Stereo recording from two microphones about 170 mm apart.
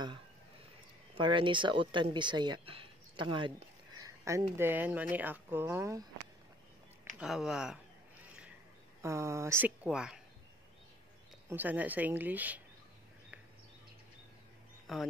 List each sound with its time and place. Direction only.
1.1 s speech: 30° right (ahead or behind)
7.2 s speech: centre (ahead or behind)
9.0 s speech: 15° right (ahead or behind)
9.8 s speech: 5° right (ahead or behind)
11.4 s speech: 10° right (ahead or behind)
14.9 s speech: centre (ahead or behind)